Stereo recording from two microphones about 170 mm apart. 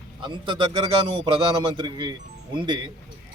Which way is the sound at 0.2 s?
25° right (ahead or behind).